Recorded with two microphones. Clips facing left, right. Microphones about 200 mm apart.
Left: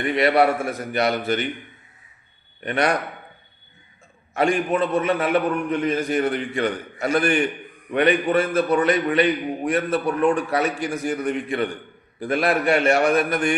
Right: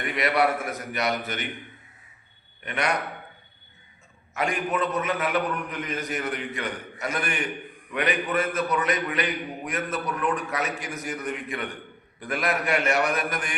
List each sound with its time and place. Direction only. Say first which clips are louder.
0.2 s a man's voice: left 5 dB; 30° left (ahead or behind)
2.6 s a man's voice: left 7 dB; 35° left (ahead or behind)
4.4 s a man's voice: left 6 dB; 30° left (ahead or behind)